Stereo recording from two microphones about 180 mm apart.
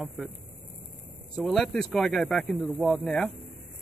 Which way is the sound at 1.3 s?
5° left (ahead or behind).